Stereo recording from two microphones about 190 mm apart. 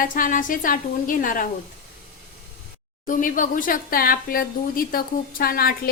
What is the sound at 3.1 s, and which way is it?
A woman's voice, 45° left (ahead or behind).